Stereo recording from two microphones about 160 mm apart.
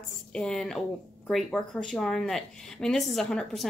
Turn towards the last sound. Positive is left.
turn(degrees=0)  # may be behind; listen again after turning